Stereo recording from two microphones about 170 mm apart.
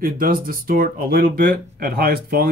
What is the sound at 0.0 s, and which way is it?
Speech, 55° right (ahead or behind).